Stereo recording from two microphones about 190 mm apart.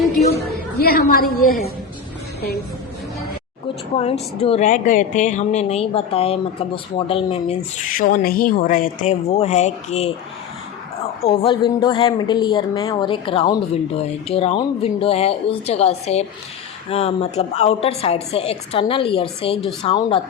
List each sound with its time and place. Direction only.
0.3 s a woman's voice: 55° left (ahead or behind)
3.9 s a woman's voice: 35° left (ahead or behind)
11.2 s a woman's voice: 30° left (ahead or behind)